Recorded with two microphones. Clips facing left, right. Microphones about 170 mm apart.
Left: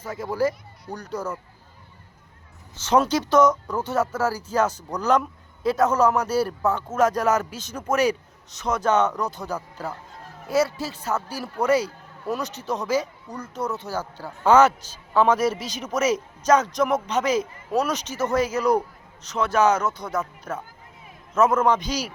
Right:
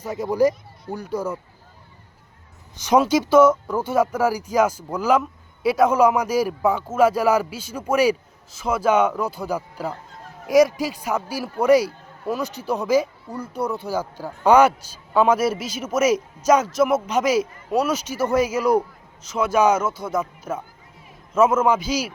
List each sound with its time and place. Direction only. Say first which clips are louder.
0.0 s speech: right 5 dB; 15° right (ahead or behind)
2.7 s a woman's voice: right 3 dB; 15° right (ahead or behind)